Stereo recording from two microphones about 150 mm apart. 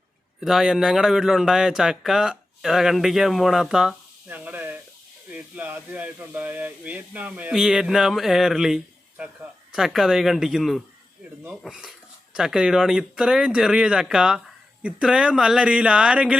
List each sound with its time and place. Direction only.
0.3 s speech: 5° right (ahead or behind)